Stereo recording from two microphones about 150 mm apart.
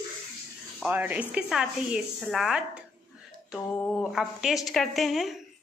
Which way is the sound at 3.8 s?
10° left (ahead or behind).